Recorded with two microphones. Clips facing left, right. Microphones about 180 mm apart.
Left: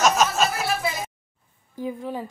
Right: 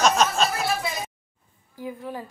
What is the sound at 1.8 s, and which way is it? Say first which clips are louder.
Speech: left 4 dB; 15° left (ahead or behind).